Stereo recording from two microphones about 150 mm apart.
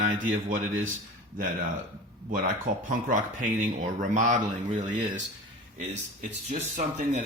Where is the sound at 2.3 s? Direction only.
65° right (ahead or behind).